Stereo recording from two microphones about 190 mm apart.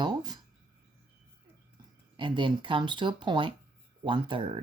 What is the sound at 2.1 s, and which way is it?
Speech, 25° right (ahead or behind).